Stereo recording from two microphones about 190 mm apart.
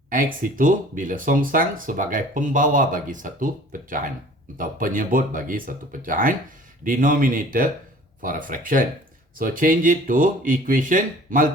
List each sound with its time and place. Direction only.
0.1 s speech: 45° right (ahead or behind)